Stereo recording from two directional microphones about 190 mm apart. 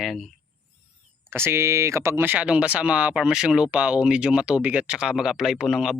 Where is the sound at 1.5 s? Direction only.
15° right (ahead or behind).